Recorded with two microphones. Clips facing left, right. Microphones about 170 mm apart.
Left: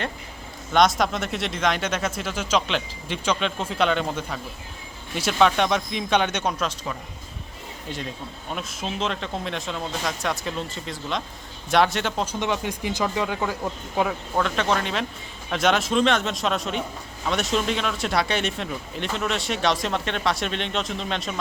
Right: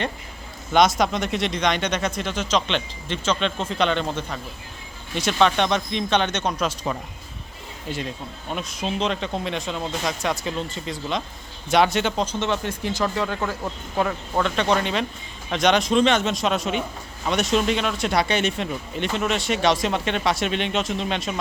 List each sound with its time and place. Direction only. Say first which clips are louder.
0.7 s speech: right 1 dB; centre (ahead or behind)
6.9 s speech: right 4 dB; 30° right (ahead or behind)
7.9 s speech: right 3 dB; centre (ahead or behind)